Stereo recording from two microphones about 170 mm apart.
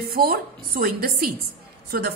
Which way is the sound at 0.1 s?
60° right (ahead or behind).